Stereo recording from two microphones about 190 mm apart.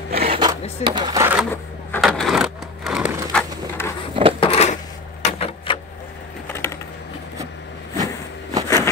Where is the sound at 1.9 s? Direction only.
Centre (ahead or behind).